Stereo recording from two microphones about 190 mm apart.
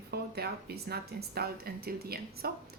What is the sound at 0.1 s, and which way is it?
A woman's voice, 55° right (ahead or behind).